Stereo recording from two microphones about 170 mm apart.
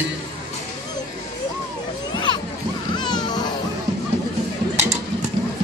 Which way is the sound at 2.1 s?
25° left (ahead or behind).